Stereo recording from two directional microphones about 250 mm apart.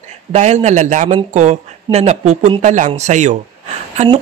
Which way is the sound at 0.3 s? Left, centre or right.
Right.